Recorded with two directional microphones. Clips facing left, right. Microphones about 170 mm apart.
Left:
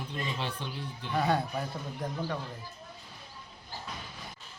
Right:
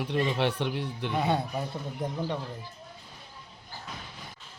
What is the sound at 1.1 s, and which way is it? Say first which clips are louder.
A man's voice: even; 20° right (ahead or behind).